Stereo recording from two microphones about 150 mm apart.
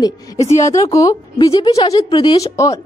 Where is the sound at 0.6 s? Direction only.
20° left (ahead or behind).